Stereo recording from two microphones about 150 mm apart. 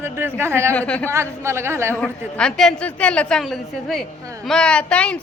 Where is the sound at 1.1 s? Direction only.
15° right (ahead or behind).